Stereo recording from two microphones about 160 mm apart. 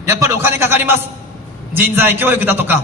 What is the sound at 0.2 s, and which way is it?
A man's voice, 15° right (ahead or behind).